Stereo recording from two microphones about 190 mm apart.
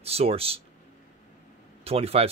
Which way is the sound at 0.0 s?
30° right (ahead or behind).